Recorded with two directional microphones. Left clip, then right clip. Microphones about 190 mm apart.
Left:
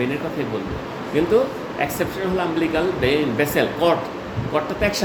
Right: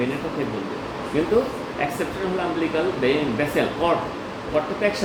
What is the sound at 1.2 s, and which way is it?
Speech, 60° left (ahead or behind).